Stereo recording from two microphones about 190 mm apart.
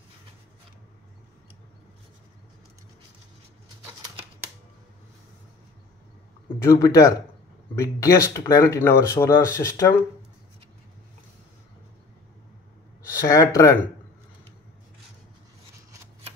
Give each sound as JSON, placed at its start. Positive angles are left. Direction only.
{"t": 6.6, "sound": "speech", "side_deg": 15}
{"t": 13.2, "sound": "speech", "side_deg": 15}